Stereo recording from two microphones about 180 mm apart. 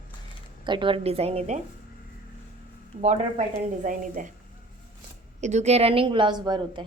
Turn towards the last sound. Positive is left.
turn(degrees=-25)  # may be behind; listen again after turning